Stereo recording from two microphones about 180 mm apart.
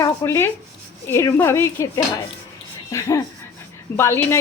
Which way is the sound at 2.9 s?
15° left (ahead or behind).